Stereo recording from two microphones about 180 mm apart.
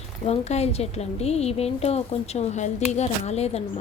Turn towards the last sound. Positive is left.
turn(degrees=35)  # may be behind; listen again after turning